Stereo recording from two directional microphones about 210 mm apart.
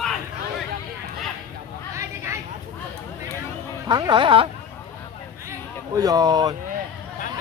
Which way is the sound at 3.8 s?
20° right (ahead or behind).